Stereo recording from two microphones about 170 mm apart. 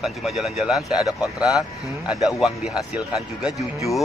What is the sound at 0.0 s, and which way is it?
Speech, centre (ahead or behind).